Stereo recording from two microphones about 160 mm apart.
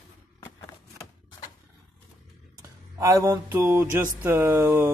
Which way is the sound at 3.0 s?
20° right (ahead or behind).